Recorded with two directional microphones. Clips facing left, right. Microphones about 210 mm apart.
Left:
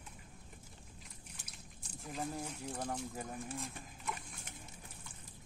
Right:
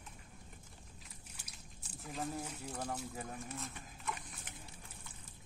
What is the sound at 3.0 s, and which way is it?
Speech, centre (ahead or behind).